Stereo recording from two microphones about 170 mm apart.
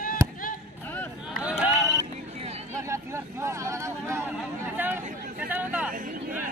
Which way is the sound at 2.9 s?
15° right (ahead or behind).